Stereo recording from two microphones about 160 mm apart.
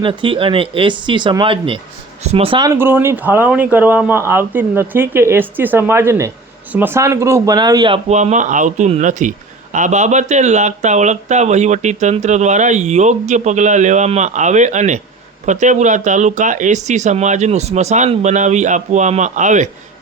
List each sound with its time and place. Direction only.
0.0 s speech: 30° right (ahead or behind)
2.6 s speech: 15° right (ahead or behind); by 8.0 s 30° right (ahead or behind)
8.1 s speech: 45° right (ahead or behind)